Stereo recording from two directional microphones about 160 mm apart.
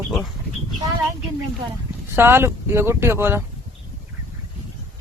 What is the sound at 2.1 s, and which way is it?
Speech, 15° right (ahead or behind).